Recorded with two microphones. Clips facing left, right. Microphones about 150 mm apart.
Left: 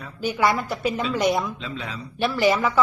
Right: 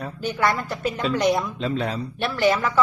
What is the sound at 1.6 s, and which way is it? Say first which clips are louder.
Speech: right 8 dB; 50° right (ahead or behind).